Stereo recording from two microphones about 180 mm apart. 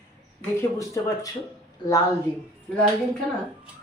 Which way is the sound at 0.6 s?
15° left (ahead or behind).